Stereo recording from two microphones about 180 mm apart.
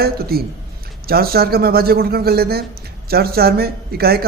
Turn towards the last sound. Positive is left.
turn(degrees=-60)  # may be behind; listen again after turning